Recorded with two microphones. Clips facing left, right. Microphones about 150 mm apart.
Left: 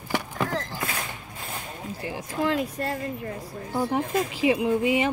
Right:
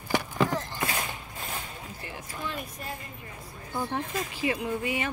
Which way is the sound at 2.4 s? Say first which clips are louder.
Left 12 dB; 90° left.